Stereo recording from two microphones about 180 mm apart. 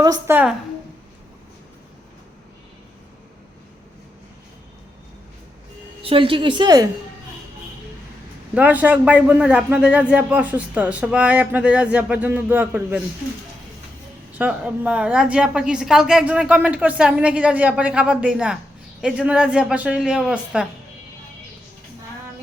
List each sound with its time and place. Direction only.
0.0 s a woman's voice: 20° right (ahead or behind)
6.0 s a woman's voice: 30° right (ahead or behind)
8.5 s a man's voice: 10° right (ahead or behind)
14.3 s a man's voice: 5° right (ahead or behind)